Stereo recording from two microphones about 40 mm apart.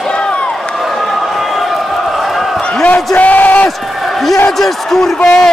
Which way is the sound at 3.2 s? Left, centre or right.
Left.